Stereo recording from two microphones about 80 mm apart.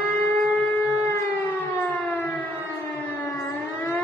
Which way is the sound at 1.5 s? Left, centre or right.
Left.